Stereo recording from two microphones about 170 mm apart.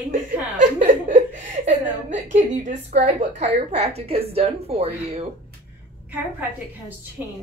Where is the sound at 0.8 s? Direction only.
50° right (ahead or behind).